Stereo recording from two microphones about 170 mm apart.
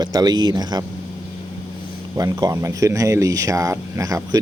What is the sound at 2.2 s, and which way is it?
Speech, 20° right (ahead or behind).